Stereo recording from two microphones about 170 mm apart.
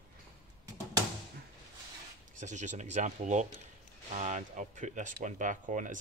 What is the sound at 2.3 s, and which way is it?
Speech, 45° right (ahead or behind).